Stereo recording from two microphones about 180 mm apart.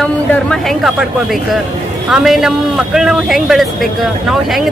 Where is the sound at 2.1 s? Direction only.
Centre (ahead or behind).